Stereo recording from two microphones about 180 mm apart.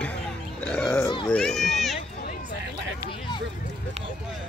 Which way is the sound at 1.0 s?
20° left (ahead or behind).